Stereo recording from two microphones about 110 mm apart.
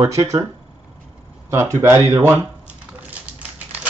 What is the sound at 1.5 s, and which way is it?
Speech, 25° right (ahead or behind).